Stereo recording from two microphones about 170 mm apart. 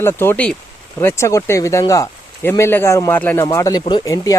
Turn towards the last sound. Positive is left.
turn(degrees=20)  # may be behind; listen again after turning